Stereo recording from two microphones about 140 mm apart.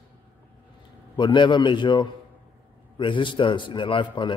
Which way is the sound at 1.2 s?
35° left (ahead or behind).